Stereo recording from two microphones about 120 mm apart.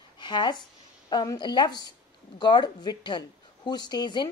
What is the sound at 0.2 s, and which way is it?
A woman's voice, 40° left (ahead or behind).